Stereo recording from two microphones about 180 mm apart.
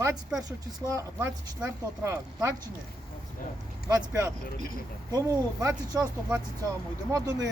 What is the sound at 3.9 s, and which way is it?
Speech, 15° right (ahead or behind).